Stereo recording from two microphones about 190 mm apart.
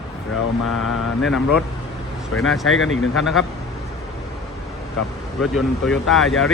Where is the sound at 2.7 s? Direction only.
90° left.